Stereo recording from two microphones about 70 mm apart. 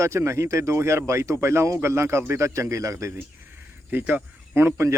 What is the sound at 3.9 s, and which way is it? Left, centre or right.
Speech, right.